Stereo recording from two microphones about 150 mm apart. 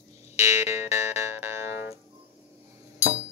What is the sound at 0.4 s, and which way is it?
Music, 20° right (ahead or behind).